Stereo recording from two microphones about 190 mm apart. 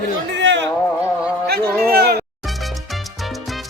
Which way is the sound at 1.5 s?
60° right (ahead or behind).